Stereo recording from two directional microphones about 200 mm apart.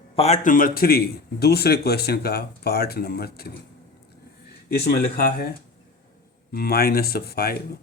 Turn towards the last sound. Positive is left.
turn(degrees=50)  # may be behind; listen again after turning